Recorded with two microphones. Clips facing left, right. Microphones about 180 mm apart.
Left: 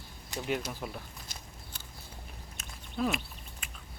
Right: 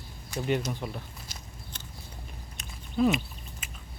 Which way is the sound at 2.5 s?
Centre (ahead or behind).